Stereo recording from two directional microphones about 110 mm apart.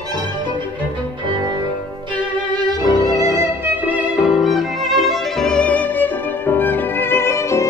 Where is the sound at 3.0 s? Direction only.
30° right (ahead or behind).